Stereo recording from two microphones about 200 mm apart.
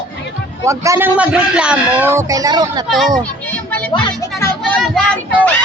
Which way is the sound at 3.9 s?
20° left (ahead or behind).